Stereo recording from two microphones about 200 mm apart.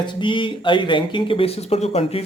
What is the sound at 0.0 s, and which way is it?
Speech, 25° left (ahead or behind).